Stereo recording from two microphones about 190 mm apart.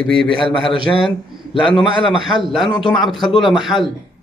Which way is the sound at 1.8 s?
Centre (ahead or behind).